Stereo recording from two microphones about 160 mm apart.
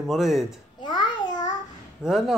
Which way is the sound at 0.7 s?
30° left (ahead or behind).